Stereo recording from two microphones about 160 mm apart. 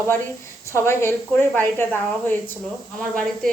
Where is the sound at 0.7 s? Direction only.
15° left (ahead or behind).